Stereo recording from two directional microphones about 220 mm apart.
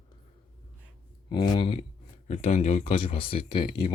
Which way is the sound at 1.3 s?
20° left (ahead or behind).